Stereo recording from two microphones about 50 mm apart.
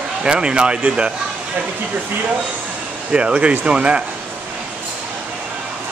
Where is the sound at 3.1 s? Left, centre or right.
Right.